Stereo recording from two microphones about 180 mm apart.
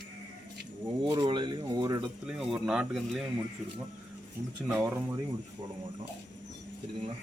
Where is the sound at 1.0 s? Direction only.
25° right (ahead or behind).